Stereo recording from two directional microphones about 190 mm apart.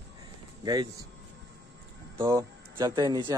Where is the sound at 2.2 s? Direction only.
20° right (ahead or behind).